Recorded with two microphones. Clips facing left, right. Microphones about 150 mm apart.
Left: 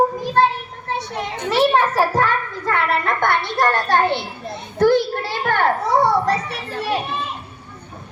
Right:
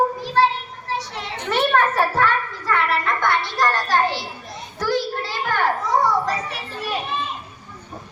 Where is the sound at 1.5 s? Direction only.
30° left (ahead or behind); by 7.0 s 70° left (ahead or behind).